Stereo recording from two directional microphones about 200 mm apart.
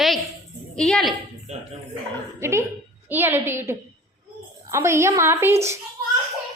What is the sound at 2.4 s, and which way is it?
A woman's voice, 15° right (ahead or behind).